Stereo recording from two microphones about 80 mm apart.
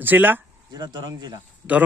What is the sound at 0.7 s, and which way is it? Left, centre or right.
Speech, right.